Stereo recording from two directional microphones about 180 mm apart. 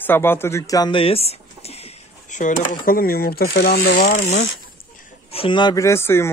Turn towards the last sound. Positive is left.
turn(degrees=15)  # may be behind; listen again after turning